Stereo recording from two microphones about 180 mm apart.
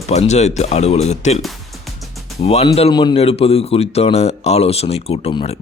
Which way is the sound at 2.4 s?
35° left (ahead or behind).